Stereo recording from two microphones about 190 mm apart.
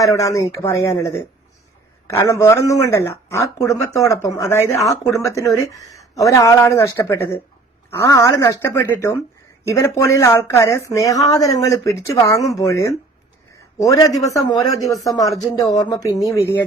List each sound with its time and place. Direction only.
0.0 s speech: 15° left (ahead or behind)